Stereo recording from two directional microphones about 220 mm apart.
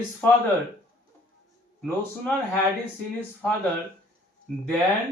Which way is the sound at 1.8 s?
5° left (ahead or behind).